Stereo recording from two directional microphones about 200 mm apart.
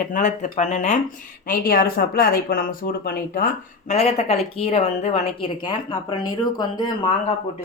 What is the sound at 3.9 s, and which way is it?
Speech, 30° left (ahead or behind).